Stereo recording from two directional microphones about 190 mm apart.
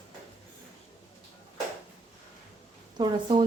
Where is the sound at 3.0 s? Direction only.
25° right (ahead or behind).